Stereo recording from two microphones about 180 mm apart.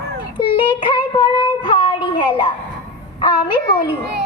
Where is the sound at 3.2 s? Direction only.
25° left (ahead or behind).